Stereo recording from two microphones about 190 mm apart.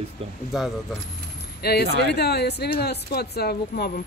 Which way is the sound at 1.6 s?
55° left (ahead or behind).